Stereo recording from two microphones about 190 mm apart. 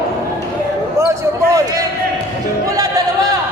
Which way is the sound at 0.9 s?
15° right (ahead or behind).